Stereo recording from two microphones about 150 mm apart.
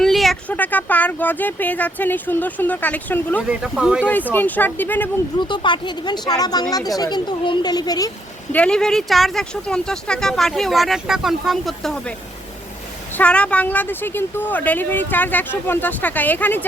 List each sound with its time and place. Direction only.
0.0 s speech: centre (ahead or behind)
3.5 s speech: 5° right (ahead or behind)
4.3 s speech: 10° left (ahead or behind)
5.4 s speech: 30° left (ahead or behind)
8.5 s speech: 5° left (ahead or behind)
13.1 s speech: 10° left (ahead or behind)